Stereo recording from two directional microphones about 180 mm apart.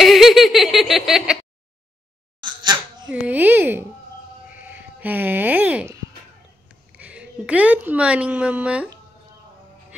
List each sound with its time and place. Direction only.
0.0 s laughter: centre (ahead or behind)
2.4 s a sound: 25° right (ahead or behind)
3.1 s speech: 10° right (ahead or behind)